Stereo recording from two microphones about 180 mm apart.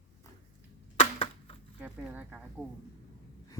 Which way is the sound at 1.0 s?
30° left (ahead or behind).